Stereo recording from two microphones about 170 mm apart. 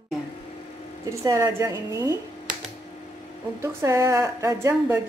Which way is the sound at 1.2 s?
15° right (ahead or behind).